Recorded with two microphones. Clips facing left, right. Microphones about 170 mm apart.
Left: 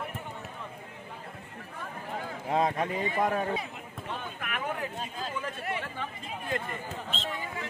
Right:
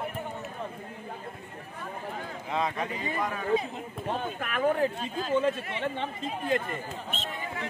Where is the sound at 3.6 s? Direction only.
35° right (ahead or behind).